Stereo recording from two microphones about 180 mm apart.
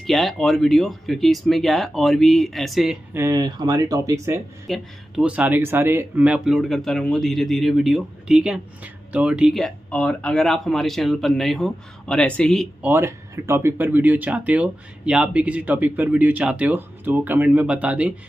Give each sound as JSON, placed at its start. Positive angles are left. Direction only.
{"t": 0.0, "sound": "speech", "side_deg": 0}
{"t": 3.1, "sound": "speech", "side_deg": -15}
{"t": 4.6, "sound": "speech", "side_deg": 0}
{"t": 12.8, "sound": "speech", "side_deg": -15}